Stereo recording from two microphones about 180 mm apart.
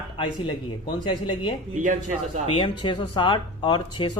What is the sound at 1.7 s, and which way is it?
Speech, 45° right (ahead or behind).